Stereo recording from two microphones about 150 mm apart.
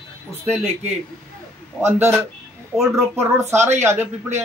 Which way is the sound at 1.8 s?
15° right (ahead or behind).